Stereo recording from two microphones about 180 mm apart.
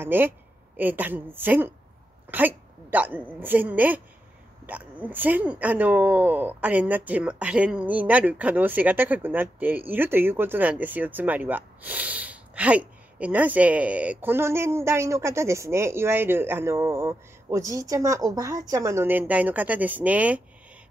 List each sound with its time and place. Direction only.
0.0 s speech: 10° right (ahead or behind)